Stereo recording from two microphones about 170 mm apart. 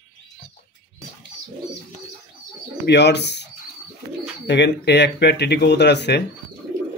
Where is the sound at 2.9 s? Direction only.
85° left.